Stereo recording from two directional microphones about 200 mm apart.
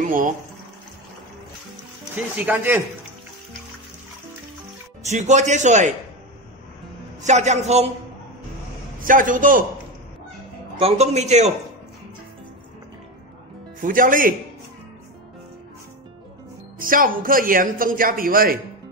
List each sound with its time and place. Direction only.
2.1 s speech: 10° right (ahead or behind)
5.0 s a man's voice: 35° right (ahead or behind)
7.2 s a man's voice: 35° right (ahead or behind)
9.0 s a man's voice: 40° right (ahead or behind)
10.8 s a man's voice: 30° right (ahead or behind)
13.7 s a man's voice: 45° right (ahead or behind)
16.7 s a man's voice: 45° right (ahead or behind)